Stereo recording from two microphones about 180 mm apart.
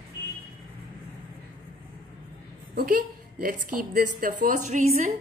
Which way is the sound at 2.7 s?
55° right (ahead or behind).